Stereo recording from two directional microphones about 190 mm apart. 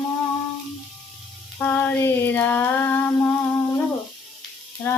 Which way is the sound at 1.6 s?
10° left (ahead or behind).